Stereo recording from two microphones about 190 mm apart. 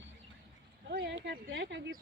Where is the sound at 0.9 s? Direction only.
60° right (ahead or behind).